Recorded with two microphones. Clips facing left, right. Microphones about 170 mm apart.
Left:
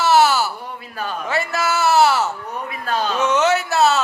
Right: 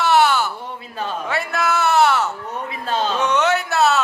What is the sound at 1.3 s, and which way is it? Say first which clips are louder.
Music: left 1 dB; centre (ahead or behind).